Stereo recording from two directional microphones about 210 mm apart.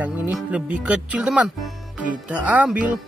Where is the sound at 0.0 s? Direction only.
5° right (ahead or behind).